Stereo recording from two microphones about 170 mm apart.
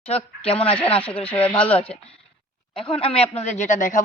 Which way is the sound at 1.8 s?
35° left (ahead or behind).